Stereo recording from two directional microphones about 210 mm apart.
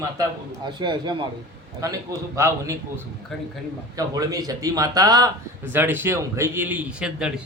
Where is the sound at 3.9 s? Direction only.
15° right (ahead or behind).